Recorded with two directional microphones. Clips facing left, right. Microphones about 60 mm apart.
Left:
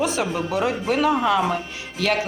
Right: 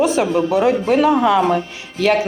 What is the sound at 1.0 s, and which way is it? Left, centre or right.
Speech, right.